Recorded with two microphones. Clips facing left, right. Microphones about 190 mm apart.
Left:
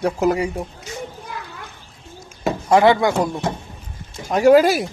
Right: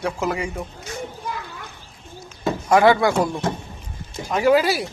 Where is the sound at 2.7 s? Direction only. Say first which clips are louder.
Left 1 dB; 20° left (ahead or behind).